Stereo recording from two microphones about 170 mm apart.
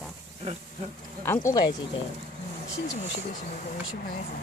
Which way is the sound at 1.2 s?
15° left (ahead or behind).